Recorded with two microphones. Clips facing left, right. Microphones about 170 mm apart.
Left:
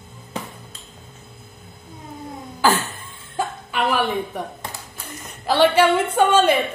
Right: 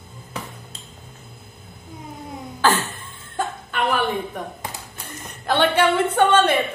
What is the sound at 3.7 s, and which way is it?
Chuckle, 5° left (ahead or behind).